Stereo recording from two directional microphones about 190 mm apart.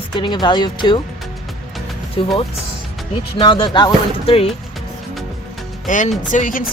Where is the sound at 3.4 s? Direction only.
25° left (ahead or behind).